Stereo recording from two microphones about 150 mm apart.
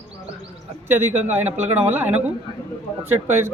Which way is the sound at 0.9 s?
15° right (ahead or behind).